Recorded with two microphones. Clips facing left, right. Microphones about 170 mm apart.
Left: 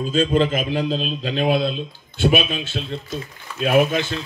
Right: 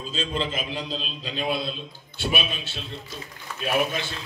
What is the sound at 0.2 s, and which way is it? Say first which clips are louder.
A man's voice: left 10 dB; 45° left (ahead or behind).